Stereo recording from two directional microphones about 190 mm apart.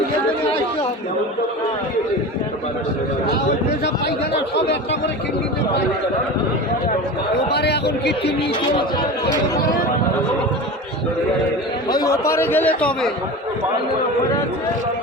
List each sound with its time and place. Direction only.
4.5 s a man's voice: 65° left (ahead or behind)
7.5 s a man's voice: 60° left (ahead or behind)
11.9 s speech: 20° left (ahead or behind)